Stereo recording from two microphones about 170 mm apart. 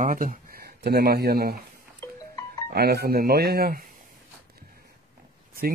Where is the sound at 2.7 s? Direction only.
70° right (ahead or behind).